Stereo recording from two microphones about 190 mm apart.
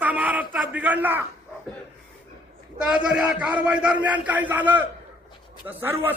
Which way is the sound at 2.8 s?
5° right (ahead or behind).